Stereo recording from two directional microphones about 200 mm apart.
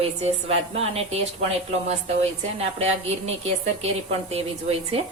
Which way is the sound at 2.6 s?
30° right (ahead or behind).